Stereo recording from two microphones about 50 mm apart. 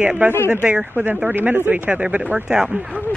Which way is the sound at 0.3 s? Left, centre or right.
Left.